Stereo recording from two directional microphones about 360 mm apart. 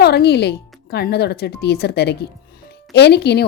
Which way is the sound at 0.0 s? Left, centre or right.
Left.